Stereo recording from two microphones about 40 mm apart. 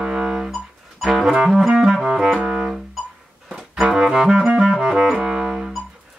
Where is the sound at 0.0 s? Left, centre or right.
Centre.